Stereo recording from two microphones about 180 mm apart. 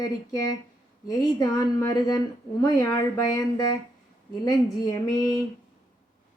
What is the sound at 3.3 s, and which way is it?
Speech, 20° left (ahead or behind).